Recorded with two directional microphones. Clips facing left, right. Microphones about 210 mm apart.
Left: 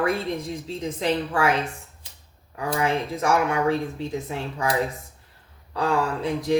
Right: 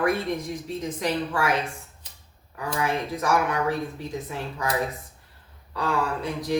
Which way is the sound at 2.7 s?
25° left (ahead or behind).